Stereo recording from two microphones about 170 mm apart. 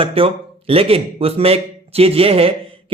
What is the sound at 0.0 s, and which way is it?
A man's voice, 35° right (ahead or behind).